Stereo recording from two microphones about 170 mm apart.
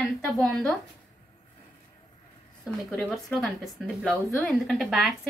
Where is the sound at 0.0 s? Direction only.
5° left (ahead or behind).